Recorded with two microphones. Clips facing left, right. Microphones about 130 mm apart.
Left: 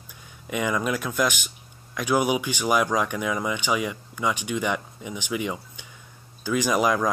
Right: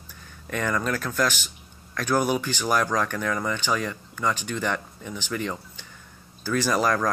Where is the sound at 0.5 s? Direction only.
10° left (ahead or behind).